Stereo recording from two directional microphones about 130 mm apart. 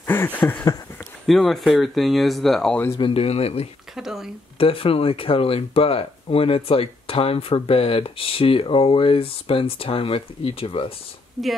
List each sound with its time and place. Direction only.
0.0 s a sound: 15° left (ahead or behind)
1.2 s speech: centre (ahead or behind)
3.0 s speech: 45° left (ahead or behind)
3.9 s speech: 5° right (ahead or behind)
4.6 s speech: 45° left (ahead or behind)
11.4 s speech: centre (ahead or behind)